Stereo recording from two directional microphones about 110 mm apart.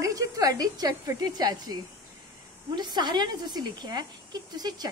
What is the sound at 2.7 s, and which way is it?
A woman's voice, 40° right (ahead or behind).